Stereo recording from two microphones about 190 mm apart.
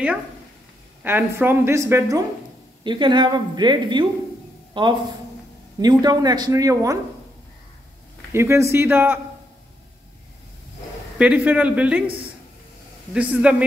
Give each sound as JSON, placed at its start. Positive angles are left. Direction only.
{"t": 1.0, "sound": "a woman's voice", "side_deg": -10}
{"t": 8.3, "sound": "speech", "side_deg": -15}
{"t": 11.1, "sound": "speech", "side_deg": -5}
{"t": 13.1, "sound": "speech", "side_deg": -5}